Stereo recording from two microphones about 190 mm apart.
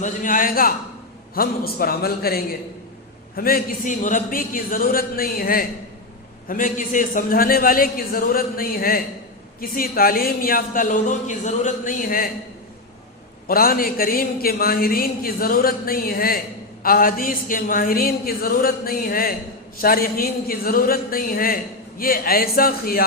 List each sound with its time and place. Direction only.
0.0 s speech: 45° left (ahead or behind)
13.5 s speech: 50° left (ahead or behind)